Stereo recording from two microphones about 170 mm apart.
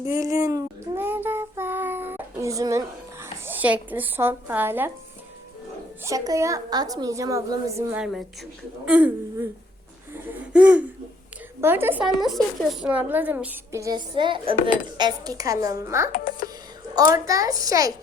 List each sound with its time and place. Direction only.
0.1 s child singing: 20° right (ahead or behind)
6.0 s a woman's voice: 20° right (ahead or behind)
8.0 s a woman's voice: centre (ahead or behind)
10.5 s a woman's voice: 5° right (ahead or behind)
16.1 s a child's voice: 60° left (ahead or behind)
16.9 s a woman's voice: 20° right (ahead or behind)